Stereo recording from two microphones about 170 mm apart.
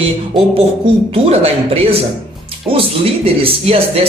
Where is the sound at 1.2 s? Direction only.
35° right (ahead or behind).